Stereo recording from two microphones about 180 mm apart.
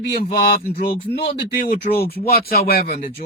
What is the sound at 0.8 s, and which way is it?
Speech, 60° left (ahead or behind).